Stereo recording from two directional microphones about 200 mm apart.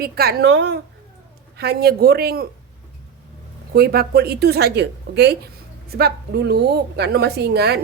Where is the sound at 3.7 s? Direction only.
50° right (ahead or behind).